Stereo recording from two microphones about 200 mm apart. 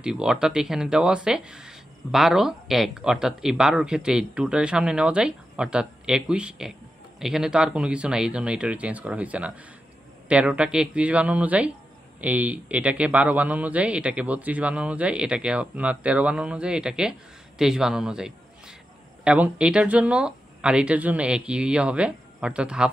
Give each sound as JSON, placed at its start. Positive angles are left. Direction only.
{"t": 0.0, "sound": "a man's voice", "side_deg": -5}